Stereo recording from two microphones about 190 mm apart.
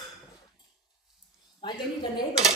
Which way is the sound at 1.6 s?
20° left (ahead or behind).